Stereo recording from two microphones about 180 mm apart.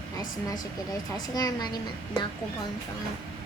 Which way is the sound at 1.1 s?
20° left (ahead or behind).